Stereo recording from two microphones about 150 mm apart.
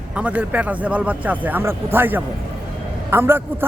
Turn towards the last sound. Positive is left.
turn(degrees=-15)  # may be behind; listen again after turning